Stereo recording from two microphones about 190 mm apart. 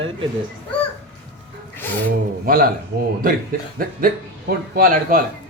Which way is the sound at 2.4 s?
50° right (ahead or behind).